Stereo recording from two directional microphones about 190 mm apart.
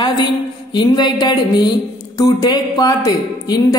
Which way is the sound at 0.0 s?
20° left (ahead or behind).